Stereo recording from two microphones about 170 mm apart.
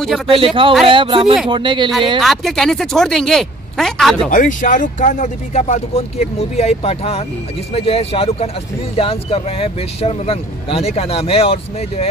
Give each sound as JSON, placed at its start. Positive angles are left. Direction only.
{"t": 0.0, "sound": "speech", "side_deg": 0}
{"t": 0.8, "sound": "speech", "side_deg": -30}
{"t": 2.1, "sound": "speech", "side_deg": 0}
{"t": 4.3, "sound": "speech", "side_deg": 50}